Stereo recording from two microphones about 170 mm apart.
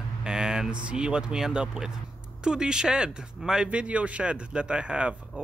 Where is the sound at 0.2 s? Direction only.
5° right (ahead or behind).